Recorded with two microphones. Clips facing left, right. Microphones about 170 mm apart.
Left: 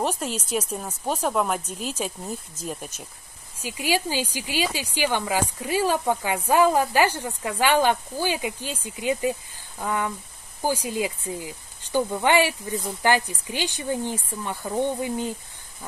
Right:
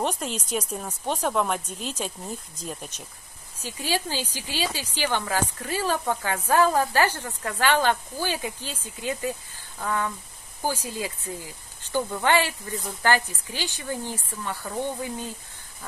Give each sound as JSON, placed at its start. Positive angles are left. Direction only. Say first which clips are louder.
{"t": 0.0, "sound": "speech", "louder": "left 1 dB", "side_deg": 5}